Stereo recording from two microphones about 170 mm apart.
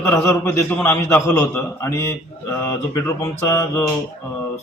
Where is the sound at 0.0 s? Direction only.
15° left (ahead or behind).